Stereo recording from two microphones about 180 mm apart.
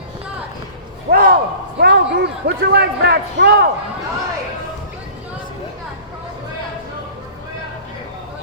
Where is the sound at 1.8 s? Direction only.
70° right (ahead or behind).